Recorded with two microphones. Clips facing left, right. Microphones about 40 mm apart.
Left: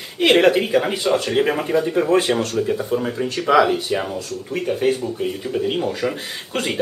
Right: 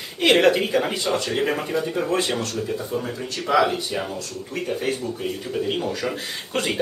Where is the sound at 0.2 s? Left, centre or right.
Centre.